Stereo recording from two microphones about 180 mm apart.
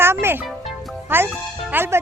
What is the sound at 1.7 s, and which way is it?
Speech, 10° right (ahead or behind).